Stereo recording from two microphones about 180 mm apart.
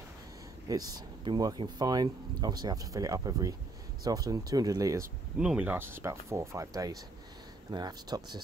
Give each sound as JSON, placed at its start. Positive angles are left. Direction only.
{"t": 0.7, "sound": "speech", "side_deg": -20}
{"t": 5.4, "sound": "speech", "side_deg": -5}